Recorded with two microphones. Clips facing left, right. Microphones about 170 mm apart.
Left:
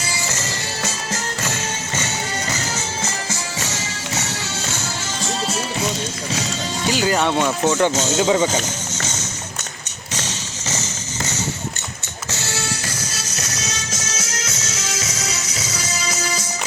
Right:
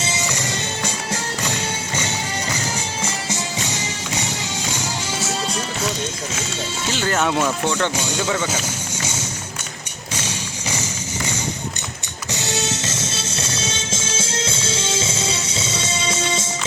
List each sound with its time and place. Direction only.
0.0 s music: 20° right (ahead or behind)
3.0 s music: 15° right (ahead or behind)
6.9 s speech: 10° left (ahead or behind)
7.9 s speech: 15° right (ahead or behind)
8.2 s speech: 15° left (ahead or behind)
9.0 s music: 10° right (ahead or behind)
10.2 s music: 10° right (ahead or behind)
12.3 s music: 20° right (ahead or behind)